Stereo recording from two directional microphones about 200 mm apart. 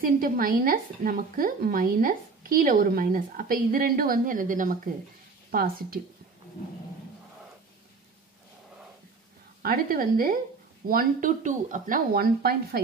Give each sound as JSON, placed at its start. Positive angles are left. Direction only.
{"t": 0.0, "sound": "speech", "side_deg": -45}
{"t": 9.6, "sound": "speech", "side_deg": -45}